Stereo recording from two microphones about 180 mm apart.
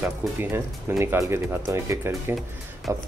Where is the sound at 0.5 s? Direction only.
15° right (ahead or behind).